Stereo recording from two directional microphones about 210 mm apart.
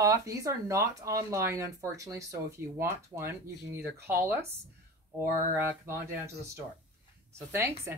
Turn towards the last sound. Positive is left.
turn(degrees=-10)  # may be behind; listen again after turning